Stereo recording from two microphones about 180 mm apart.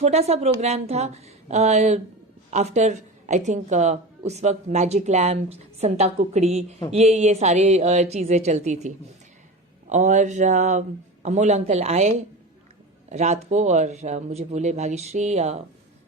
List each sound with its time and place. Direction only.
0.0 s a woman's voice: 35° right (ahead or behind)
9.9 s a woman's voice: 40° right (ahead or behind)